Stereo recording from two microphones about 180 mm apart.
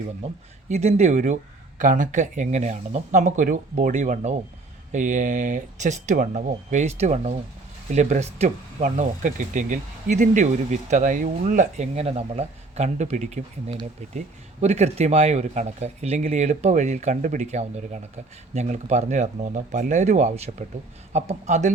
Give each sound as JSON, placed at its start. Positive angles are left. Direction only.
{"t": 0.7, "sound": "speech", "side_deg": -40}